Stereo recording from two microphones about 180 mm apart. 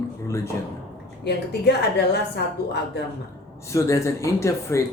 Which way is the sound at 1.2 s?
65° left (ahead or behind).